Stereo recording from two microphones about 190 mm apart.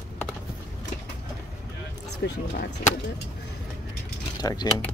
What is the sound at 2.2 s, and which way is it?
Speech, 50° left (ahead or behind).